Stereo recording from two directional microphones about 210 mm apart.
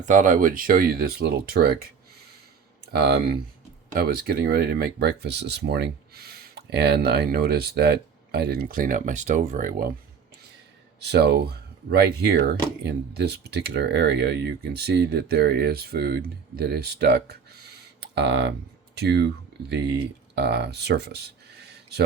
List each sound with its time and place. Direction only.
0.0 s speech: 35° right (ahead or behind)
2.9 s speech: 50° right (ahead or behind)
11.0 s speech: 50° right (ahead or behind)